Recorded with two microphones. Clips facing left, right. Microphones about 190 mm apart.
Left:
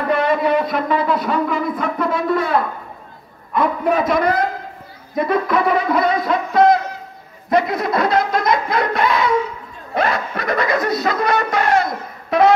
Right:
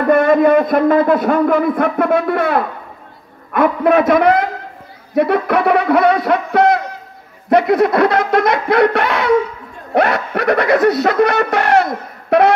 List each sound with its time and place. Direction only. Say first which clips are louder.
0.0 s a man's voice: right 7 dB; 50° right (ahead or behind); by 12.5 s 65° right (ahead or behind)